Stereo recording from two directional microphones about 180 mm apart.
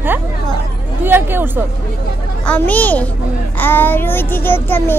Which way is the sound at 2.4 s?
10° left (ahead or behind).